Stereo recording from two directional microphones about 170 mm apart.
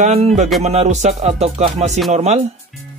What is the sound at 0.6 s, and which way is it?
Music, 40° right (ahead or behind).